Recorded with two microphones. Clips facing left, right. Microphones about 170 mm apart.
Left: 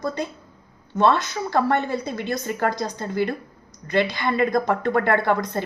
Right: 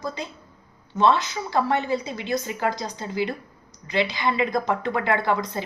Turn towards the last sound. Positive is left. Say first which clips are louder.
# left 3 dB
turn(degrees=55)  # may be behind; listen again after turning